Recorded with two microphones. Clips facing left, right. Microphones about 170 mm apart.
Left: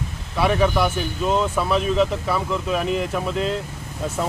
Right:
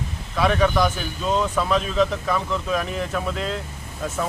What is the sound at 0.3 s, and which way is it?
Speech, 5° left (ahead or behind).